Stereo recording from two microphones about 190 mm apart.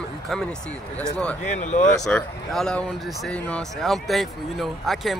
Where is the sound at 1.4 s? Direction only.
40° left (ahead or behind).